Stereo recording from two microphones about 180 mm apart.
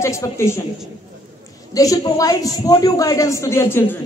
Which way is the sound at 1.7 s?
20° left (ahead or behind).